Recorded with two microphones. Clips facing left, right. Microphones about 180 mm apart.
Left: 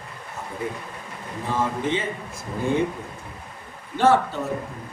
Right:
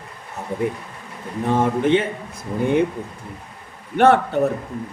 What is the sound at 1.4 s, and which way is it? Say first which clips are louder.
Speech: right 7 dB; 65° right (ahead or behind).